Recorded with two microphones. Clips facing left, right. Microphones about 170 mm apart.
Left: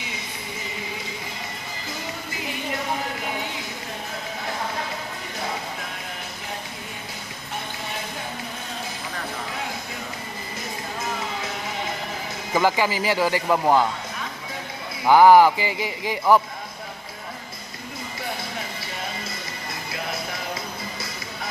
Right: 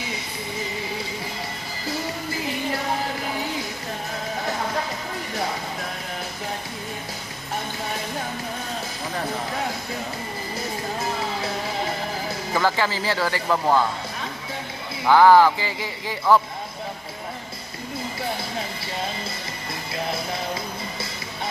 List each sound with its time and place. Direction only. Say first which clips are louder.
12.5 s speech: left 2 dB; 15° left (ahead or behind)
15.0 s speech: left 1 dB; 15° left (ahead or behind)